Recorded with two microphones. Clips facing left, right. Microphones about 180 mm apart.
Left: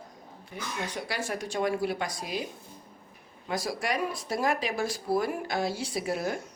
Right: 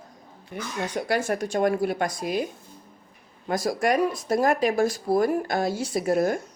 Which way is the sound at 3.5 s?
45° right (ahead or behind).